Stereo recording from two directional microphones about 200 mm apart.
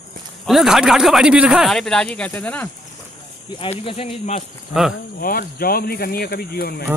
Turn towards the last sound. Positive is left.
turn(degrees=50)  # may be behind; listen again after turning